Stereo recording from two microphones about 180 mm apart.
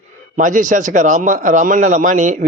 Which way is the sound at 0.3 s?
45° right (ahead or behind).